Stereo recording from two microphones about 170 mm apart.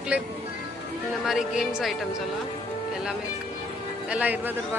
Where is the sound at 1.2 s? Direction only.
5° right (ahead or behind).